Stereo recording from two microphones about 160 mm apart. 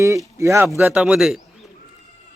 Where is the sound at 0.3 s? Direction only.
20° right (ahead or behind).